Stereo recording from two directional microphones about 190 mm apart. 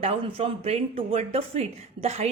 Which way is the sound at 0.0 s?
30° right (ahead or behind).